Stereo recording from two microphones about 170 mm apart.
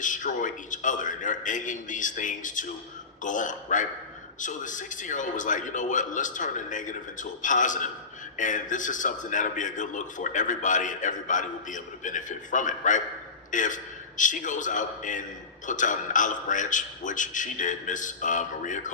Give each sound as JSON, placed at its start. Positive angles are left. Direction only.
{"t": 0.0, "sound": "a man's voice", "side_deg": 50}